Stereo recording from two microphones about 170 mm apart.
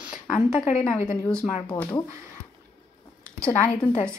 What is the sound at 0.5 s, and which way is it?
Speech, 40° left (ahead or behind).